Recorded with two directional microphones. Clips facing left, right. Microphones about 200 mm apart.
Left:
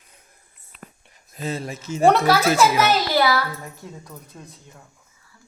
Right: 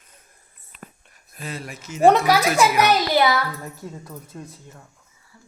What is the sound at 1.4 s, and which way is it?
Speech, 25° left (ahead or behind).